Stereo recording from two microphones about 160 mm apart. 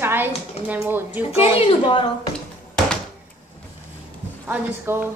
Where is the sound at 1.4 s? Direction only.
35° left (ahead or behind).